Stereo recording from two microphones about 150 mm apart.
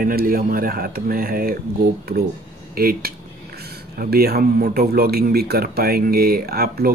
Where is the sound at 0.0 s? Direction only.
75° right (ahead or behind).